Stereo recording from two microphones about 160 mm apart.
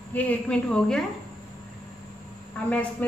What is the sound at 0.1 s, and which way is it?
Speech, 10° left (ahead or behind).